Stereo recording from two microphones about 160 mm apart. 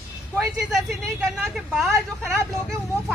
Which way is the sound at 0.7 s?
Centre (ahead or behind).